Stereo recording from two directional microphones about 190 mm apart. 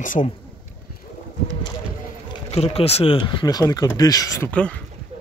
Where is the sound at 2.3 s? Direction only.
30° left (ahead or behind).